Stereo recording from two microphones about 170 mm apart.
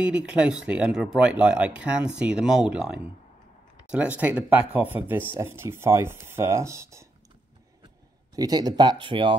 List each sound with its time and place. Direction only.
0.0 s speech: 5° right (ahead or behind)
8.4 s speech: 25° right (ahead or behind)